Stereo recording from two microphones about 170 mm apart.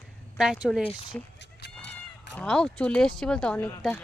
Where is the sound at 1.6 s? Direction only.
90° left.